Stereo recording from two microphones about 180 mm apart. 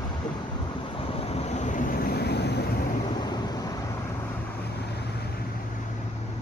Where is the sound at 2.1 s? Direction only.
65° left (ahead or behind).